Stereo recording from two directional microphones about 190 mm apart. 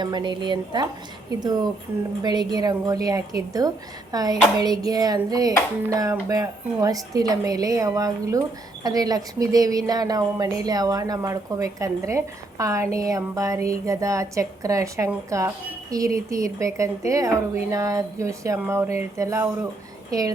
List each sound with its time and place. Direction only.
0.0 s a woman's voice: 25° right (ahead or behind)
4.6 s a sound: 20° right (ahead or behind)
20.1 s a woman's voice: 20° right (ahead or behind)